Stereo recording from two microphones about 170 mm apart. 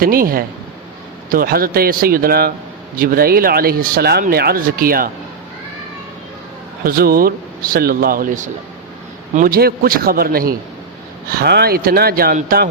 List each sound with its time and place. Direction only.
0.0 s speech: 60° right (ahead or behind)
6.8 s speech: 60° right (ahead or behind)